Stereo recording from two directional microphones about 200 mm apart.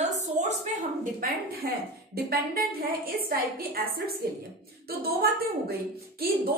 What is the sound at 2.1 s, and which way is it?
A woman's voice, 50° right (ahead or behind).